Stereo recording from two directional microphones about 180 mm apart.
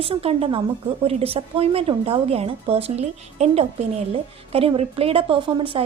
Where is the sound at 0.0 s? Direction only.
30° right (ahead or behind).